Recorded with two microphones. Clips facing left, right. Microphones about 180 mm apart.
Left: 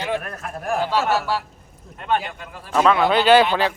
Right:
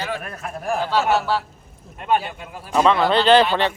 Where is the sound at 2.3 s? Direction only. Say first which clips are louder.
Right 1 dB; 10° right (ahead or behind).